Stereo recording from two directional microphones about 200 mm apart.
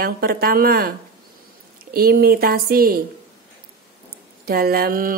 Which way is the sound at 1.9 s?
50° right (ahead or behind).